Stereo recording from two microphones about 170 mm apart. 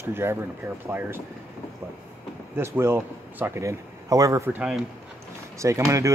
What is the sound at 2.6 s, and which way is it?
Speech, 15° right (ahead or behind).